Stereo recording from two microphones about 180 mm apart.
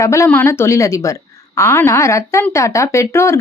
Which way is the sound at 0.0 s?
15° left (ahead or behind).